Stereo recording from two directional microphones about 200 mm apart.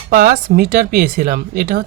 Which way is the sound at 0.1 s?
50° right (ahead or behind).